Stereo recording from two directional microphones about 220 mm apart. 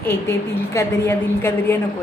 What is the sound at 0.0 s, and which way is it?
A woman's voice, 10° left (ahead or behind).